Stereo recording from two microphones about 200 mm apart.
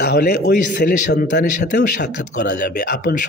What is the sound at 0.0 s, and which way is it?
Speech, 55° left (ahead or behind).